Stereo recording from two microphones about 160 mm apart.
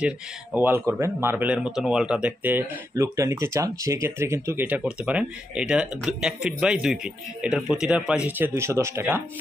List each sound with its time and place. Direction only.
0.5 s speech: 10° right (ahead or behind)